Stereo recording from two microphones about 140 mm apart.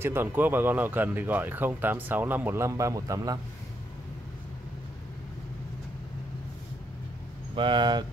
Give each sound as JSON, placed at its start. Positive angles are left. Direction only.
{"t": 0.0, "sound": "speech", "side_deg": -15}
{"t": 7.5, "sound": "speech", "side_deg": -35}